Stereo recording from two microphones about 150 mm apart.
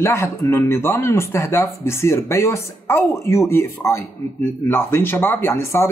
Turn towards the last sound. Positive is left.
turn(degrees=20)  # may be behind; listen again after turning